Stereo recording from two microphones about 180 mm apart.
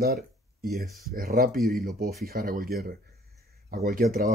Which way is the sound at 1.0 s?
55° right (ahead or behind).